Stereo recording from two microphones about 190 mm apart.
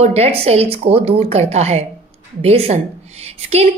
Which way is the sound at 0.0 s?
35° right (ahead or behind).